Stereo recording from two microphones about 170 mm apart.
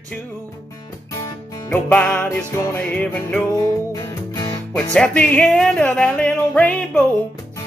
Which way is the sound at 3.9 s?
20° left (ahead or behind).